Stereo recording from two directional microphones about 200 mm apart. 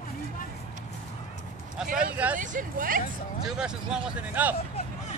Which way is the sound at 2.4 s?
40° right (ahead or behind).